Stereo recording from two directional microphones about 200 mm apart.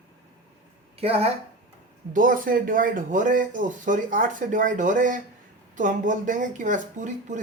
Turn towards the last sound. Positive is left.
turn(degrees=-40)  # may be behind; listen again after turning